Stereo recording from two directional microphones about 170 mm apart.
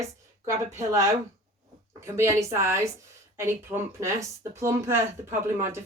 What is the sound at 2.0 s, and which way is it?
A woman's voice, 15° right (ahead or behind).